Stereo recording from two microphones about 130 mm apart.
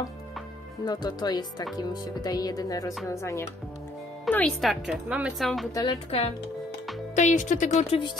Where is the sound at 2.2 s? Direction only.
30° left (ahead or behind).